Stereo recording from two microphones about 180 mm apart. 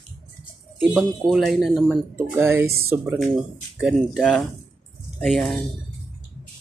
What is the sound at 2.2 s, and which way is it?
Speech, 15° right (ahead or behind).